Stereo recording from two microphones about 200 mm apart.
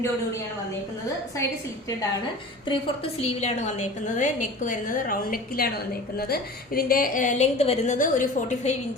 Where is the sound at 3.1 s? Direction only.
30° left (ahead or behind).